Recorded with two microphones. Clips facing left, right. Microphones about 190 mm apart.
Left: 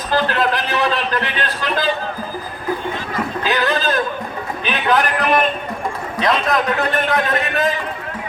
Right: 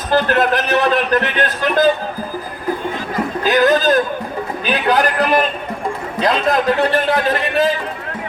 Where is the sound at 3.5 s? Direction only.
45° right (ahead or behind).